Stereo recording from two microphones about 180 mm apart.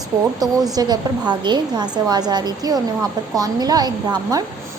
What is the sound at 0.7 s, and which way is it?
A woman's voice, 20° right (ahead or behind).